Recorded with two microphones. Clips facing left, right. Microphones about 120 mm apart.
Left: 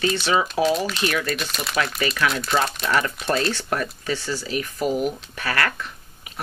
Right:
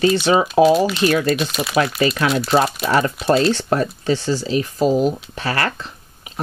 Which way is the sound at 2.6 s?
5° right (ahead or behind).